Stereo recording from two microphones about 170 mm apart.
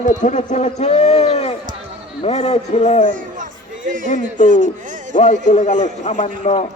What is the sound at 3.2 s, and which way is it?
Music, 50° right (ahead or behind).